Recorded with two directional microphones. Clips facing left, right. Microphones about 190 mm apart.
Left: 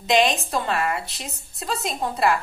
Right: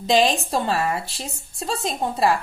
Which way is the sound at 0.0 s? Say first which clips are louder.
Right 1 dB; 35° right (ahead or behind).